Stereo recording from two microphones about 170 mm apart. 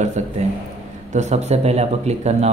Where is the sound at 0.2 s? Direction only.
40° right (ahead or behind).